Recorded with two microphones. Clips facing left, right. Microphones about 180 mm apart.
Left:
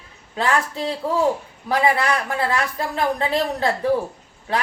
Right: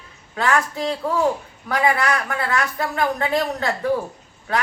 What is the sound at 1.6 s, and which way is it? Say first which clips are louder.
A woman's voice: left 1 dB; 25° left (ahead or behind).